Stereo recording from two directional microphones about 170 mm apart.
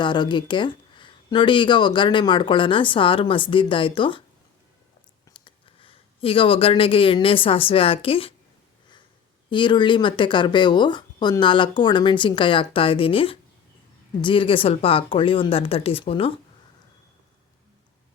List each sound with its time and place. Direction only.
0.0 s speech: 25° left (ahead or behind)
5.3 s speech: 30° left (ahead or behind)
9.5 s speech: 30° left (ahead or behind)